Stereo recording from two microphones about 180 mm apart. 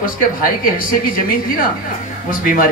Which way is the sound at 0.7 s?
50° left (ahead or behind).